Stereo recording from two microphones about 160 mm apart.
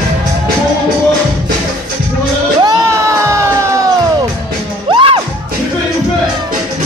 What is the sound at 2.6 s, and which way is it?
Music, 20° right (ahead or behind).